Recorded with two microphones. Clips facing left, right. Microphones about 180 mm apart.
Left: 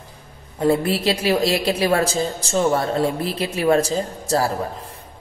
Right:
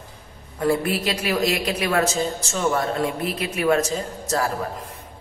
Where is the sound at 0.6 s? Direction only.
25° left (ahead or behind).